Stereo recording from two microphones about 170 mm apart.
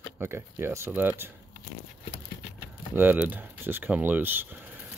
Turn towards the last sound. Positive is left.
turn(degrees=-10)  # may be behind; listen again after turning